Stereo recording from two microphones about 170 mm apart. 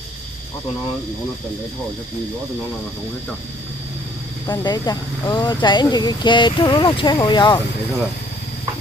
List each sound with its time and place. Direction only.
4.5 s speech: 20° left (ahead or behind)